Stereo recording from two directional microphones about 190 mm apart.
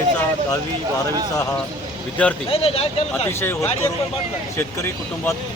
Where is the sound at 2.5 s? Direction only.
30° left (ahead or behind).